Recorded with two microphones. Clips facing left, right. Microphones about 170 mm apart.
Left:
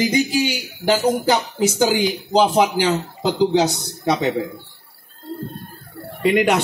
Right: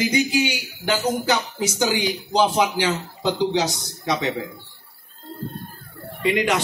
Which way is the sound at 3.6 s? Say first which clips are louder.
Left 5 dB; 60° left (ahead or behind).